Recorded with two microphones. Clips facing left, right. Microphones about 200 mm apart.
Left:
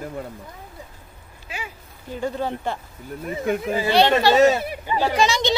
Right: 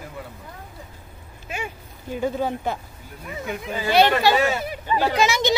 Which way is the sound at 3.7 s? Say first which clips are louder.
Right 1 dB; 25° left (ahead or behind).